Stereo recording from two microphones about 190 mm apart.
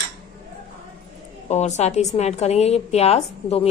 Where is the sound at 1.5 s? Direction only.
35° left (ahead or behind).